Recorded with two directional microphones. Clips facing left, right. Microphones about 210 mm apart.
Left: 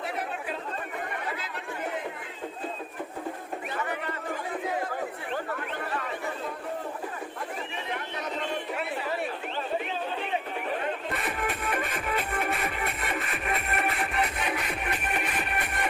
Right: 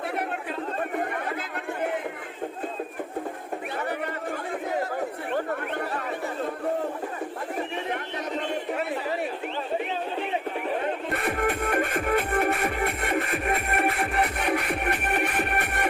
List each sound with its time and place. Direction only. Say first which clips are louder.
11.2 s music: right 6 dB; 55° right (ahead or behind)